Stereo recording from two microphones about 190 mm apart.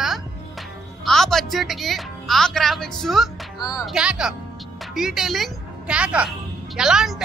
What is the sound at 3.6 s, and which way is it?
Speech, 20° left (ahead or behind).